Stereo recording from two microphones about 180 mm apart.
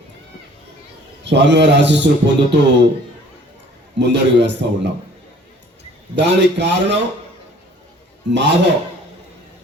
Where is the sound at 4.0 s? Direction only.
75° right (ahead or behind).